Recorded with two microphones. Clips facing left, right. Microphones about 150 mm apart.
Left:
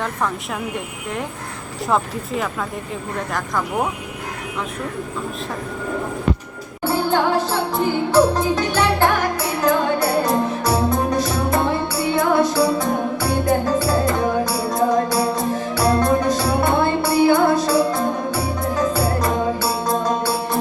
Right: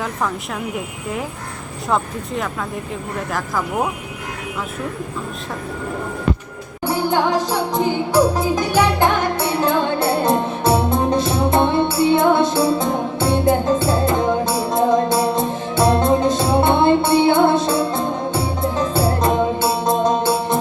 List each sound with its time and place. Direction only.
0.0 s speech: centre (ahead or behind)
1.9 s speech: centre (ahead or behind)
6.8 s music: 15° right (ahead or behind)
9.4 s music: 30° right (ahead or behind)